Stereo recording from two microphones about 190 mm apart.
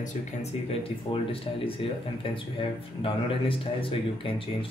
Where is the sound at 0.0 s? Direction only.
35° left (ahead or behind).